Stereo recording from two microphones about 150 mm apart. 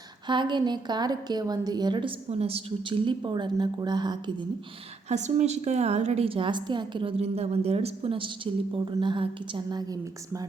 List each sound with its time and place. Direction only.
0.3 s a woman's voice: 30° right (ahead or behind)
5.0 s a woman's voice: 50° right (ahead or behind); by 10.4 s 25° right (ahead or behind)